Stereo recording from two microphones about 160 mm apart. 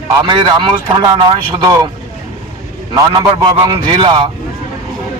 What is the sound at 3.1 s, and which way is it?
A man's voice, 30° right (ahead or behind).